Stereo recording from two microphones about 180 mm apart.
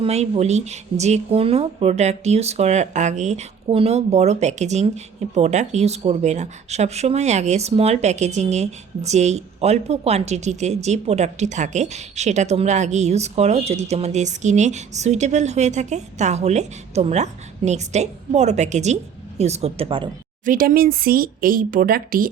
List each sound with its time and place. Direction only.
0.0 s speech: 35° right (ahead or behind)
20.4 s speech: 50° right (ahead or behind)